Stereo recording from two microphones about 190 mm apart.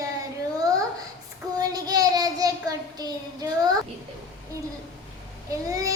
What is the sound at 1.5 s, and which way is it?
Child singing, 20° right (ahead or behind).